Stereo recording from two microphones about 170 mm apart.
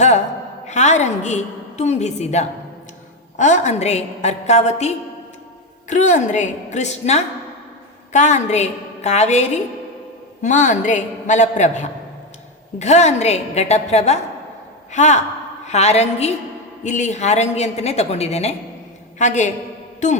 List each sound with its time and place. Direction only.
0.7 s a woman's voice: 45° left (ahead or behind)